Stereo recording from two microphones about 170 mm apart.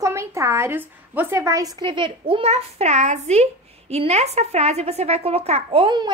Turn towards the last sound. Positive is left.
turn(degrees=-30)  # may be behind; listen again after turning